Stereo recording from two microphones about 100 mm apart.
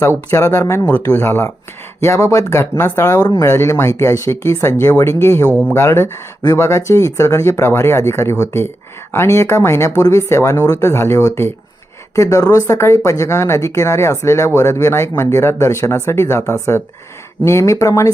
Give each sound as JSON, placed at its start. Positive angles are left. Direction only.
{"t": 0.3, "sound": "speech", "side_deg": 30}